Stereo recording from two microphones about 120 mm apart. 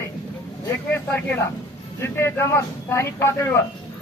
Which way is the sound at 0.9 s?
15° left (ahead or behind).